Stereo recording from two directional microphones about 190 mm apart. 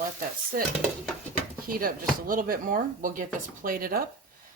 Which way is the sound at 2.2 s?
45° right (ahead or behind).